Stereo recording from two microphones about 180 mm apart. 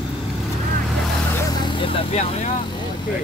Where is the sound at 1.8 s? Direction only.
40° left (ahead or behind).